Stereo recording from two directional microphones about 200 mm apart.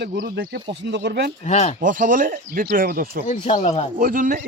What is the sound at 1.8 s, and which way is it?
Speech, 45° right (ahead or behind).